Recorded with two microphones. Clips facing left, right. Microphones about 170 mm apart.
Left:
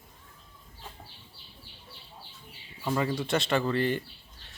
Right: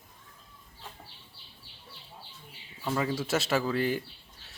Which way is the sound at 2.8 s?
Centre (ahead or behind).